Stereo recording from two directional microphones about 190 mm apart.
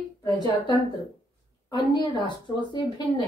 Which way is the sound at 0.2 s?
20° left (ahead or behind).